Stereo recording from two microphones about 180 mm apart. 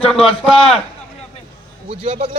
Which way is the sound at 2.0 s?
35° right (ahead or behind).